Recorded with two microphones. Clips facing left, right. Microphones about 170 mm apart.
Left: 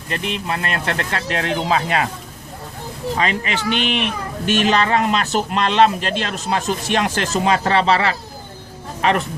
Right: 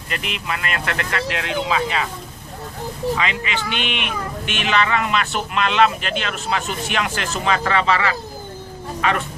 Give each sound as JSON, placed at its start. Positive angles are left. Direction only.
{"t": 0.1, "sound": "speech", "side_deg": 30}
{"t": 3.2, "sound": "speech", "side_deg": 40}